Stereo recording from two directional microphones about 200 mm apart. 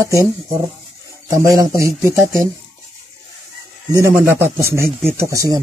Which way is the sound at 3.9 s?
15° right (ahead or behind).